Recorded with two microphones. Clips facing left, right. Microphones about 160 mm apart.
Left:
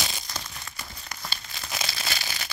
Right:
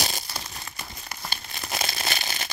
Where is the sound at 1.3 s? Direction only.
50° right (ahead or behind).